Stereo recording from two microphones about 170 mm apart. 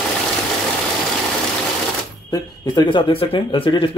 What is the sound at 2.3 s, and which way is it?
Speech, 25° left (ahead or behind).